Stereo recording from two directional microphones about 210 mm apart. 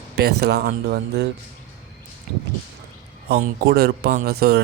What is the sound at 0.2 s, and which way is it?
A man's voice, 50° right (ahead or behind).